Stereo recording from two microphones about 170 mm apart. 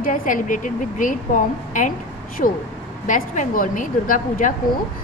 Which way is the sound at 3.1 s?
50° left (ahead or behind).